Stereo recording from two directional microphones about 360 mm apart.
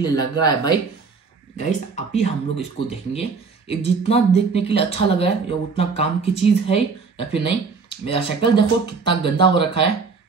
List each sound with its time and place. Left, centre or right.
0.0 s speech: centre